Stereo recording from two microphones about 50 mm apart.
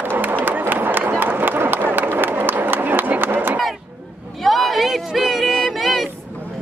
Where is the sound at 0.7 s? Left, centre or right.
Right.